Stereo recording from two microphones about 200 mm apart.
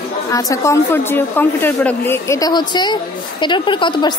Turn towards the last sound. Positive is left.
turn(degrees=25)  # may be behind; listen again after turning